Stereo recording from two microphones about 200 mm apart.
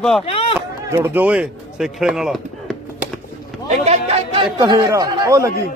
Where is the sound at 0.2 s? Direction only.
30° left (ahead or behind).